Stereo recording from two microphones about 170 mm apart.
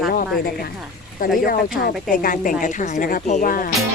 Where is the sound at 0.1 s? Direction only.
60° left (ahead or behind).